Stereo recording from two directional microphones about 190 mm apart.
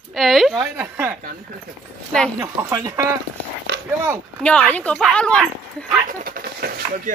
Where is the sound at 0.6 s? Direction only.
15° right (ahead or behind).